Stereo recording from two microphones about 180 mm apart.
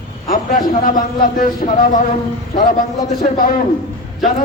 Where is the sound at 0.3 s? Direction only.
50° left (ahead or behind).